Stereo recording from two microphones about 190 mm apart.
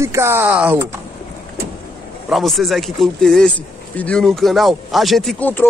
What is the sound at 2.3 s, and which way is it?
A man's voice, centre (ahead or behind).